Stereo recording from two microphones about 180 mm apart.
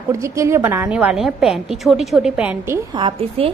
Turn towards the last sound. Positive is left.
turn(degrees=-35)  # may be behind; listen again after turning